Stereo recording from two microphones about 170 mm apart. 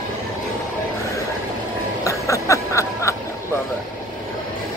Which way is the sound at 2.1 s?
20° left (ahead or behind).